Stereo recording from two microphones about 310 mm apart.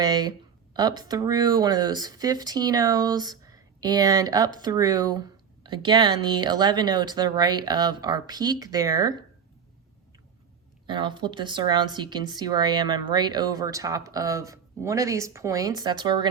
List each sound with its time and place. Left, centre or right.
0.0 s speech: centre
10.8 s speech: centre